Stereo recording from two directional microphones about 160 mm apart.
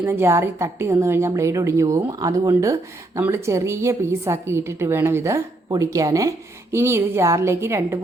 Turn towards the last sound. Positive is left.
turn(degrees=-15)  # may be behind; listen again after turning